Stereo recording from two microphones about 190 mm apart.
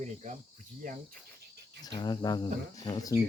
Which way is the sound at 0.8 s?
45° right (ahead or behind).